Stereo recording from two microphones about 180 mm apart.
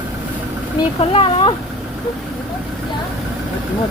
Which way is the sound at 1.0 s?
30° left (ahead or behind).